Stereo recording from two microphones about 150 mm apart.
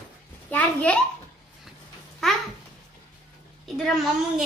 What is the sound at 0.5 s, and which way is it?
Speech, 10° left (ahead or behind).